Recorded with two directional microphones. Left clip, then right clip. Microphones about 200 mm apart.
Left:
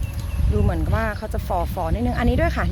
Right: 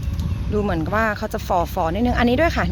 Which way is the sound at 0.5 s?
30° right (ahead or behind).